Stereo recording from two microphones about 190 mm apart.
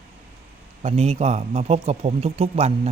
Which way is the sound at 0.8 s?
35° right (ahead or behind).